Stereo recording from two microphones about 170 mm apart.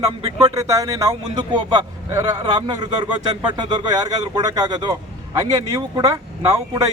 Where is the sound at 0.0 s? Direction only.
20° right (ahead or behind).